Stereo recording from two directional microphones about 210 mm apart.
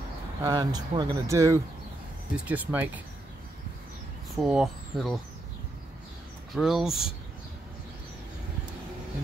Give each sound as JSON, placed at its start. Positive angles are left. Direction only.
{"t": 0.4, "sound": "speech", "side_deg": -20}
{"t": 4.4, "sound": "speech", "side_deg": 0}
{"t": 6.5, "sound": "speech", "side_deg": 0}